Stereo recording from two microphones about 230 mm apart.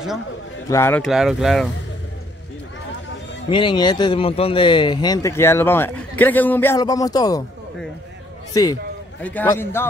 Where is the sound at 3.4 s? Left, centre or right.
Centre.